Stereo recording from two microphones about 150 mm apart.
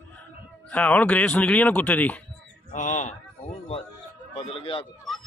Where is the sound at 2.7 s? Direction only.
55° left (ahead or behind).